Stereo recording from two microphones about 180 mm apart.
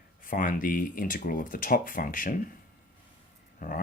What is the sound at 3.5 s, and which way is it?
Speech, 50° left (ahead or behind).